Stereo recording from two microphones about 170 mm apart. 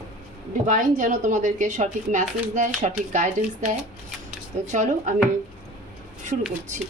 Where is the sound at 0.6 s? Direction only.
50° right (ahead or behind).